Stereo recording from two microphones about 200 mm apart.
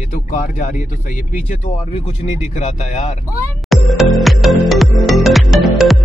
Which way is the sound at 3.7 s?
Centre (ahead or behind).